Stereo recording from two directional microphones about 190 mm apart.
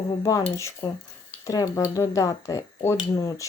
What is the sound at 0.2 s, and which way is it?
Speech, 20° left (ahead or behind).